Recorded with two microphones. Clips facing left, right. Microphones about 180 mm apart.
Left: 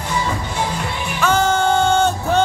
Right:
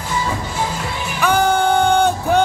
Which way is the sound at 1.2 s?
15° right (ahead or behind).